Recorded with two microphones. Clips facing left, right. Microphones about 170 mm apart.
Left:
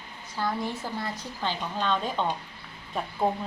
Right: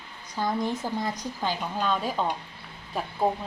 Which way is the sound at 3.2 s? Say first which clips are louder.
Right 1 dB; 10° right (ahead or behind).